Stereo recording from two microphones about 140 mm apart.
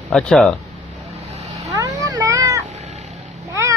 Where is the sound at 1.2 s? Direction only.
50° right (ahead or behind).